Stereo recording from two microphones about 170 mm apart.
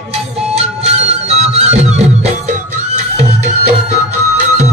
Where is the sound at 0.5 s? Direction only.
35° right (ahead or behind).